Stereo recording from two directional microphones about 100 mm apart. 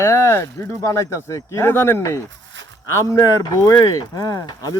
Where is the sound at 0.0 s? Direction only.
25° left (ahead or behind).